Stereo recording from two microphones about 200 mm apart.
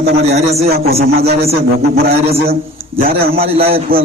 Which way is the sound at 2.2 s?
30° right (ahead or behind).